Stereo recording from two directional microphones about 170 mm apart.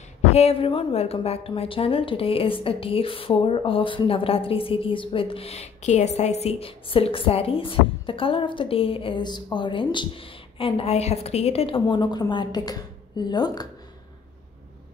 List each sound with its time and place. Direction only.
0.2 s a woman's voice: 40° left (ahead or behind)